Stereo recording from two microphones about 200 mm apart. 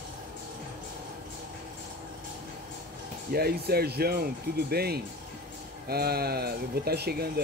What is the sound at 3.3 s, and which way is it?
Speech, 50° right (ahead or behind).